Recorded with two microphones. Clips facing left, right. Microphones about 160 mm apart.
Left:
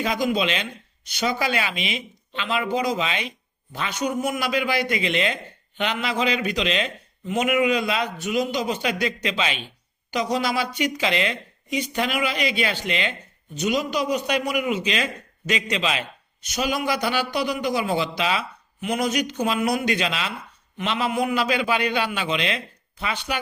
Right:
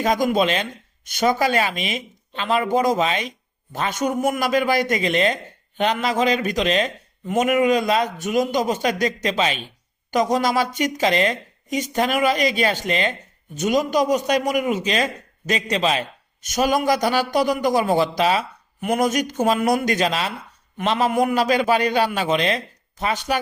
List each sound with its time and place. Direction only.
0.0 s a man's voice: 45° right (ahead or behind)